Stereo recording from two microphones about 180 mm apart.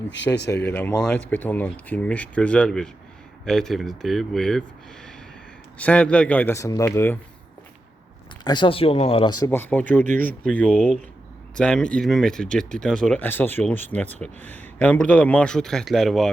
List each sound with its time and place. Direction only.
0.5 s speech: 10° left (ahead or behind)
5.7 s speech: 10° left (ahead or behind)
8.4 s speech: 25° left (ahead or behind)
9.5 s speech: 10° left (ahead or behind)